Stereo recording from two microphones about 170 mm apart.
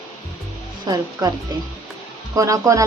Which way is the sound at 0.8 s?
20° right (ahead or behind).